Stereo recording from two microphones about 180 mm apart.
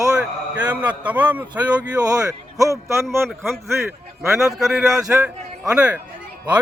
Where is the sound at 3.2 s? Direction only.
Centre (ahead or behind).